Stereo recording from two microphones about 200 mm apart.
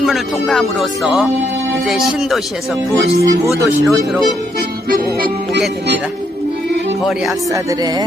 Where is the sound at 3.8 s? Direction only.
Centre (ahead or behind).